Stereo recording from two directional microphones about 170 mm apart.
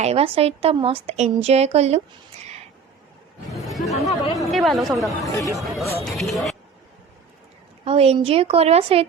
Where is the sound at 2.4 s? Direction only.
40° right (ahead or behind).